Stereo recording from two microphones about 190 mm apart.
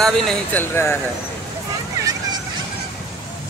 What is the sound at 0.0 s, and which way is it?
Speech, 10° left (ahead or behind).